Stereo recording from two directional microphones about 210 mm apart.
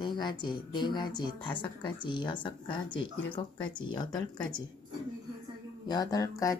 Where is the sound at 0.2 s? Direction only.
20° left (ahead or behind).